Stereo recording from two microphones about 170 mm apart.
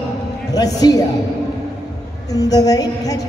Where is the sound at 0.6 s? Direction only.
20° left (ahead or behind).